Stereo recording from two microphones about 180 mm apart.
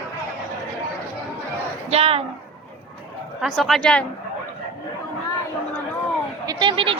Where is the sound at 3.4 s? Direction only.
Centre (ahead or behind).